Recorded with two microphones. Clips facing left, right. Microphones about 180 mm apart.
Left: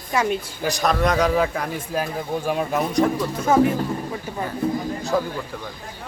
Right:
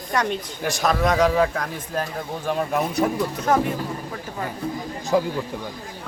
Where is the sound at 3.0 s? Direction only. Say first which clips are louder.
Left 2 dB; 5° right (ahead or behind).